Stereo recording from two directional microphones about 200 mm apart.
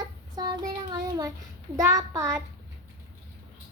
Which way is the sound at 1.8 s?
15° right (ahead or behind).